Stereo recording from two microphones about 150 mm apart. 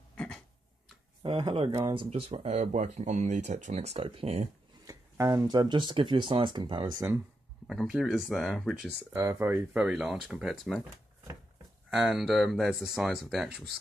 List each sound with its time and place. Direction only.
0.1 s a sound: 5° left (ahead or behind)
1.2 s speech: 40° right (ahead or behind)
1.7 s speech: 20° right (ahead or behind)
2.0 s speech: 40° right (ahead or behind)
4.8 s speech: 20° right (ahead or behind)
7.6 s speech: 5° right (ahead or behind)
9.3 s speech: 15° right (ahead or behind)
9.8 s speech: 5° right (ahead or behind)
12.1 s speech: 5° right (ahead or behind)